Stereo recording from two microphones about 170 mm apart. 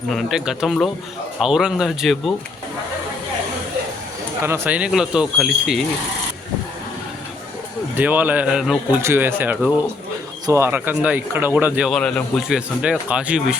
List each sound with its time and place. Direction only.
0.1 s speech: centre (ahead or behind)
4.4 s speech: 15° right (ahead or behind)
7.9 s speech: 10° right (ahead or behind)
9.0 s speech: 15° right (ahead or behind); by 12.5 s 5° left (ahead or behind)
12.5 s speech: 5° right (ahead or behind)